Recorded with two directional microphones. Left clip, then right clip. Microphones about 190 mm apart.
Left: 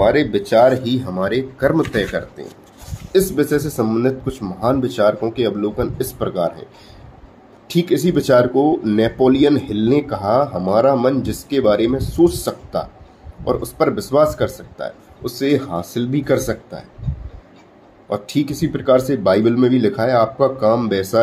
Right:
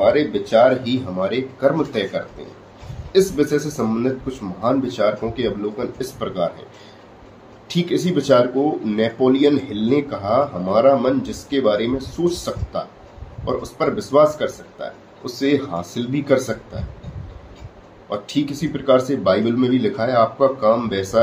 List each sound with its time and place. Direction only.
0.0 s speech: 50° left (ahead or behind)
7.6 s speech: 45° left (ahead or behind)
18.1 s speech: 45° left (ahead or behind)